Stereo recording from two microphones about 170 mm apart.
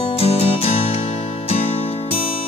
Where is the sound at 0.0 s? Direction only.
35° left (ahead or behind).